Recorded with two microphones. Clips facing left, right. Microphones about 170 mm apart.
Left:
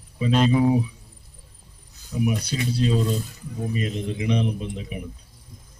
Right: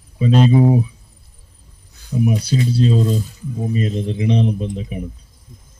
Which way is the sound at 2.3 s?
35° right (ahead or behind).